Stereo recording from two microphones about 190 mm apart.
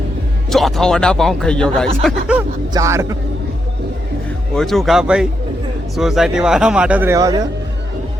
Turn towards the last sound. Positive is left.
turn(degrees=-20)  # may be behind; listen again after turning